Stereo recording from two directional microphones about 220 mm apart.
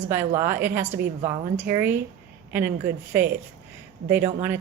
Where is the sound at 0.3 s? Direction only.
10° right (ahead or behind).